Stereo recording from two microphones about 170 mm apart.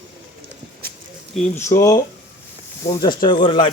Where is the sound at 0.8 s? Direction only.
65° right (ahead or behind).